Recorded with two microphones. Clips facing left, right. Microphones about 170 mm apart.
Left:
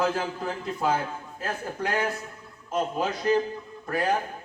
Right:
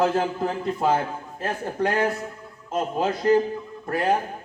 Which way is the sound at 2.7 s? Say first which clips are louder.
Right 3 dB; 50° right (ahead or behind).